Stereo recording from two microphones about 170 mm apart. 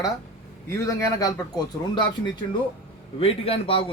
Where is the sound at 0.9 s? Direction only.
20° left (ahead or behind).